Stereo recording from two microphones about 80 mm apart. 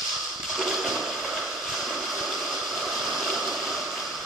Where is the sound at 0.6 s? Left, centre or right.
Centre.